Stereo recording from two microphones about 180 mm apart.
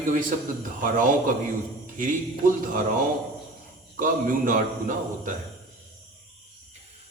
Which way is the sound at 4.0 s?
50° right (ahead or behind).